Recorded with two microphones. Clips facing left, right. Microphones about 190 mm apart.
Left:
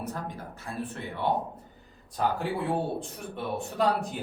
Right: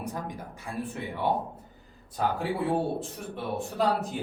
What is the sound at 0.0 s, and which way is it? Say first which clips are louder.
Speech: even; 15° right (ahead or behind).